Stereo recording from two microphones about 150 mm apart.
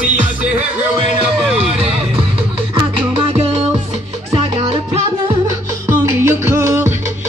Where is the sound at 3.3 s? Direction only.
45° right (ahead or behind).